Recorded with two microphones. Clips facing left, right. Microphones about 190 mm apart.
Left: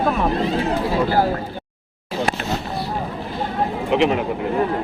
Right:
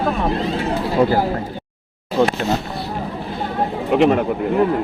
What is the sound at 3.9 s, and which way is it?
Speech, 50° right (ahead or behind).